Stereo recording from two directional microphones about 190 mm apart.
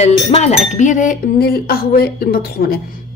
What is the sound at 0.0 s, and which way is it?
Cutlery, 35° left (ahead or behind).